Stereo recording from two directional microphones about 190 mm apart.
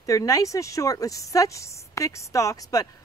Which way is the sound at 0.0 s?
15° left (ahead or behind).